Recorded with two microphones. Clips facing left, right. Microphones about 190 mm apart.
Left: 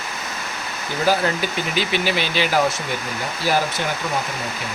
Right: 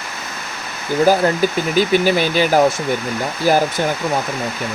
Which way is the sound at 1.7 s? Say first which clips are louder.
Right 7 dB; 45° right (ahead or behind).